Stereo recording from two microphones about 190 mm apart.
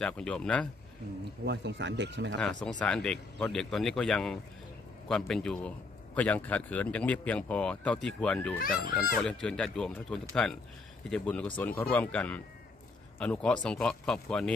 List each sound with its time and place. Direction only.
0.0 s speech: 5° left (ahead or behind)
1.4 s speech: 65° right (ahead or behind)
2.8 s speech: 5° left (ahead or behind)
8.5 s a child's voice: 50° left (ahead or behind)
9.2 s speech: 5° left (ahead or behind)